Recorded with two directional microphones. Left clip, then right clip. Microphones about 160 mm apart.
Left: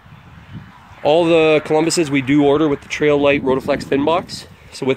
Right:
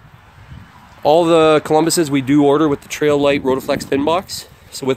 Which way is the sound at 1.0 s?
25° right (ahead or behind).